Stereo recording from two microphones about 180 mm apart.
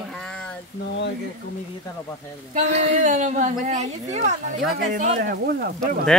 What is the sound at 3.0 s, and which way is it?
Speech, 45° right (ahead or behind).